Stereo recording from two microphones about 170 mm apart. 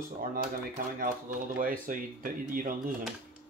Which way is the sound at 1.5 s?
55° right (ahead or behind).